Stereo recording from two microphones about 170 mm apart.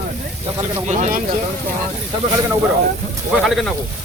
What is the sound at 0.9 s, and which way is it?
Speech, 45° right (ahead or behind).